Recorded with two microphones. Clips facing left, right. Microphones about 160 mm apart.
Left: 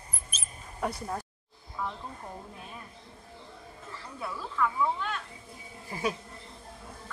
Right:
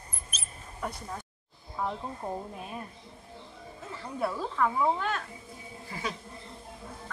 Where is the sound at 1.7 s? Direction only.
35° right (ahead or behind).